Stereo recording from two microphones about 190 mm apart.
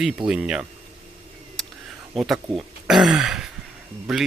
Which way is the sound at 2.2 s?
Centre (ahead or behind).